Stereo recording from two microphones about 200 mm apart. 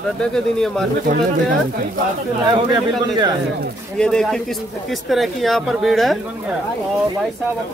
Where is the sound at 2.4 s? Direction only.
20° right (ahead or behind).